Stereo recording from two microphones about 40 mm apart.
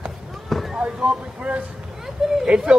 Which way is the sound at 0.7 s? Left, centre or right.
Right.